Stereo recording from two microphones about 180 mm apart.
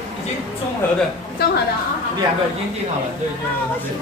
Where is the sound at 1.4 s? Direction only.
60° left (ahead or behind).